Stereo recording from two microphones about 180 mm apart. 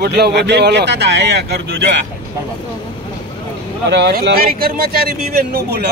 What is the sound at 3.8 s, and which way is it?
Speech, 70° right (ahead or behind).